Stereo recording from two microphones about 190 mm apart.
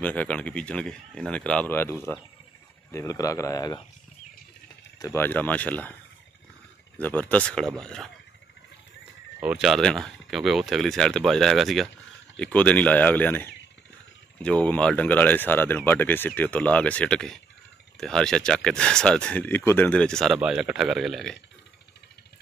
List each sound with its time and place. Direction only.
0.0 s speech: 5° left (ahead or behind)
4.9 s speech: 15° left (ahead or behind)
7.0 s speech: 10° left (ahead or behind)
9.4 s speech: 5° right (ahead or behind)